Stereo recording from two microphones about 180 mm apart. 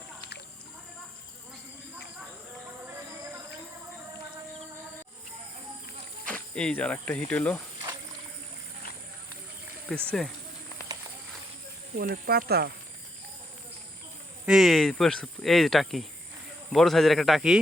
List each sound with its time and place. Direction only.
6.2 s speech: 5° left (ahead or behind)
9.9 s speech: 5° left (ahead or behind)
11.9 s speech: 60° right (ahead or behind)
14.4 s speech: centre (ahead or behind)